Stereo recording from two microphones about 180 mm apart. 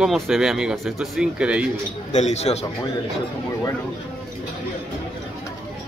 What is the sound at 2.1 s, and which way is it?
Speech, 40° left (ahead or behind).